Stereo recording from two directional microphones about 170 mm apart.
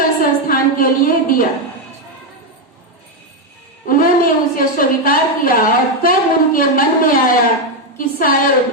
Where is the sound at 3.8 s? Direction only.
55° left (ahead or behind).